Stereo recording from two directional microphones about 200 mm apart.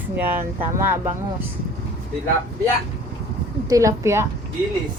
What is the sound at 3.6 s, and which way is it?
Speech, 15° right (ahead or behind).